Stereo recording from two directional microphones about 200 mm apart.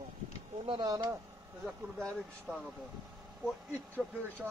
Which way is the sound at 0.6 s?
20° right (ahead or behind).